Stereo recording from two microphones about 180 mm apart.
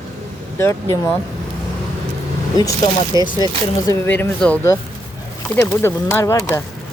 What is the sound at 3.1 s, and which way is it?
Speech, 25° left (ahead or behind).